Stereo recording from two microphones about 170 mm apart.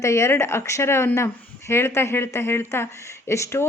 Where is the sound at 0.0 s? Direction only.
15° left (ahead or behind).